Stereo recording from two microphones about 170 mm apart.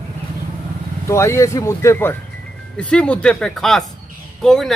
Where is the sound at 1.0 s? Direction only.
15° left (ahead or behind).